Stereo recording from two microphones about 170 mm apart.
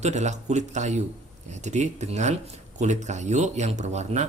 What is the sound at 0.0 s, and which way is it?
A man's voice, 40° right (ahead or behind).